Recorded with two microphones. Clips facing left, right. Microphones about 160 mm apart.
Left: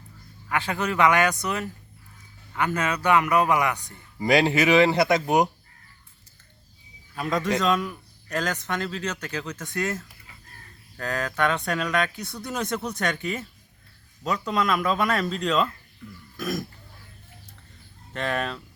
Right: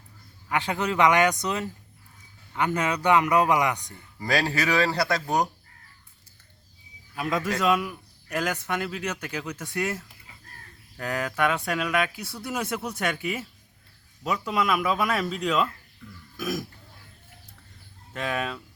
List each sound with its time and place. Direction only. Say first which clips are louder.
0.4 s speech: even; 20° right (ahead or behind)
4.2 s speech: left 6 dB; 20° left (ahead or behind)
7.2 s speech: left 2 dB; 5° right (ahead or behind)
18.1 s speech: left 2 dB; 5° right (ahead or behind)